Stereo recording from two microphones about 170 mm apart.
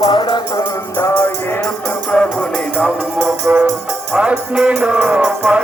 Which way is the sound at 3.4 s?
10° right (ahead or behind).